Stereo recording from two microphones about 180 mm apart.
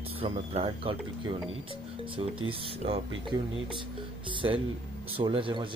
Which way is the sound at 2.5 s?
30° right (ahead or behind).